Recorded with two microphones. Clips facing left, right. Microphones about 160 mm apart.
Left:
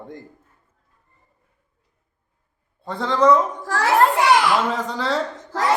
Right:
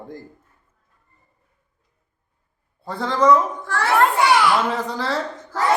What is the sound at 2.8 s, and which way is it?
Speech, 5° right (ahead or behind).